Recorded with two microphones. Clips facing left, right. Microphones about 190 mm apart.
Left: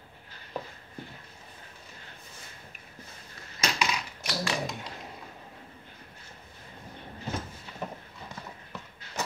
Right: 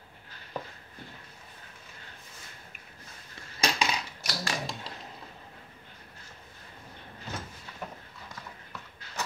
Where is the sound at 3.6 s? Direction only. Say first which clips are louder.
Right 1 dB; 35° right (ahead or behind).